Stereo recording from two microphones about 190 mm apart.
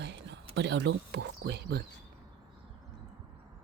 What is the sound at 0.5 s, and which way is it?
Speech, 70° right (ahead or behind).